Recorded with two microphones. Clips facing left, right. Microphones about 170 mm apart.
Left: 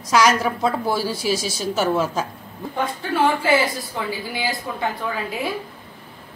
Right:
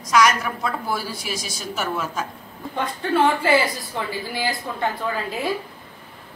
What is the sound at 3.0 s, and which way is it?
A woman's voice, 5° left (ahead or behind).